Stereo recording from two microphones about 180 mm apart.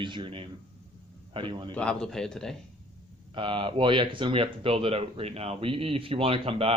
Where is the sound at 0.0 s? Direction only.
25° right (ahead or behind).